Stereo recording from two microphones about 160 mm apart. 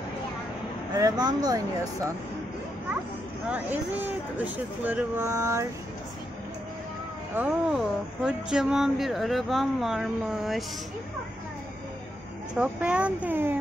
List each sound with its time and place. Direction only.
0.9 s speech: 25° right (ahead or behind)
3.4 s speech: 10° right (ahead or behind)
7.3 s speech: 5° right (ahead or behind)
12.5 s speech: 10° right (ahead or behind)